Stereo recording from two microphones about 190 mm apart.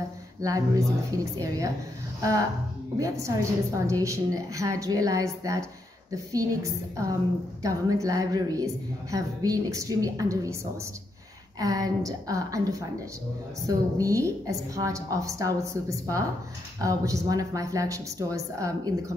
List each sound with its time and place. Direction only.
0.4 s a woman's voice: 15° right (ahead or behind)
3.0 s a woman's voice: 15° right (ahead or behind)
11.6 s a woman's voice: 20° right (ahead or behind)